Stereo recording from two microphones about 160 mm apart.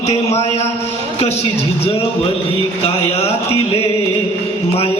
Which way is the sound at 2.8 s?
40° left (ahead or behind).